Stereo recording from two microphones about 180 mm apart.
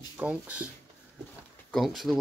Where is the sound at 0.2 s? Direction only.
5° right (ahead or behind).